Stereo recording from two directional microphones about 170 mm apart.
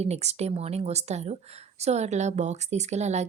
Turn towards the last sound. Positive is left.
turn(degrees=-40)  # may be behind; listen again after turning